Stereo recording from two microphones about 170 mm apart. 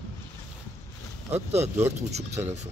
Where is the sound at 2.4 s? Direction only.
15° right (ahead or behind).